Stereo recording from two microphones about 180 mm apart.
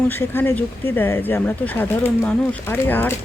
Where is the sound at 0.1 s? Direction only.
10° left (ahead or behind).